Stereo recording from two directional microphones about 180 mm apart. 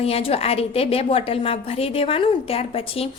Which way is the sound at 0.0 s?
30° left (ahead or behind).